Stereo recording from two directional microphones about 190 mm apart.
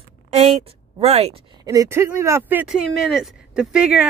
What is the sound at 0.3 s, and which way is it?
A woman's voice, 35° right (ahead or behind).